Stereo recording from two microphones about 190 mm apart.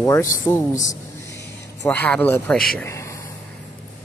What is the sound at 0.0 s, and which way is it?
Speech, 15° left (ahead or behind).